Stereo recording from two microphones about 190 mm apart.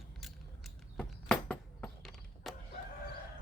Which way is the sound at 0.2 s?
Centre (ahead or behind).